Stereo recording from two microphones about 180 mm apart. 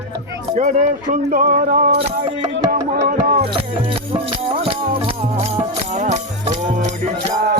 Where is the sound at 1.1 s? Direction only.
45° right (ahead or behind).